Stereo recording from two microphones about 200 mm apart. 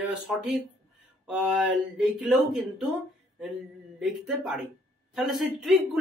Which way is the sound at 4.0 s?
Centre (ahead or behind).